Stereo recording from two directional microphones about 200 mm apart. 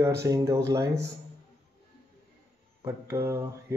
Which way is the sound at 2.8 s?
15° right (ahead or behind).